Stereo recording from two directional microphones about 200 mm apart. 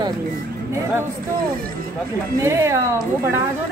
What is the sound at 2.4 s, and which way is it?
Speech, 15° right (ahead or behind).